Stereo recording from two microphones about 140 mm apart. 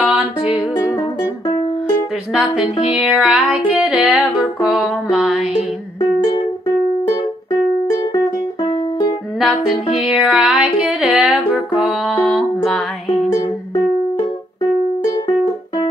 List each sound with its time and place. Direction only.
0.0 s music: 10° right (ahead or behind)
0.7 s music: 30° left (ahead or behind)
2.3 s music: 5° right (ahead or behind)
8.6 s music: 35° left (ahead or behind)
9.9 s music: 5° right (ahead or behind)
13.7 s music: 40° left (ahead or behind)